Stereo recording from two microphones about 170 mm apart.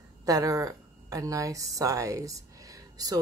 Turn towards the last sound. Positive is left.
turn(degrees=-20)  # may be behind; listen again after turning